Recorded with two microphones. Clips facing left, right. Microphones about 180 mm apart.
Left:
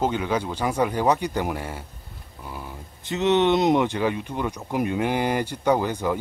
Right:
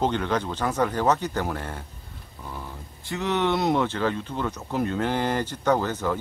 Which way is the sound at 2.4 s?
10° left (ahead or behind).